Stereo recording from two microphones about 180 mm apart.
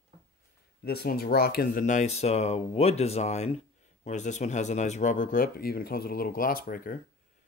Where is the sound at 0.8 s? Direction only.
60° left (ahead or behind).